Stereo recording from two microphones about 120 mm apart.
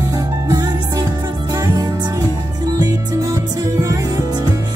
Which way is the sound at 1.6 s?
30° right (ahead or behind).